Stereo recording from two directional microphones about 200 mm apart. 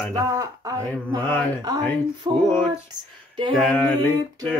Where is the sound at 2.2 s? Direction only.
35° right (ahead or behind).